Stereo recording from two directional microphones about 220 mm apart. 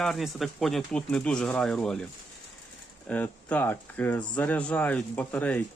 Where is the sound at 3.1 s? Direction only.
5° left (ahead or behind).